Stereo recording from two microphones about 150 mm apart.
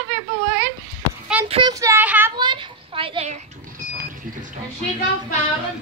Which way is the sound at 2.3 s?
30° right (ahead or behind).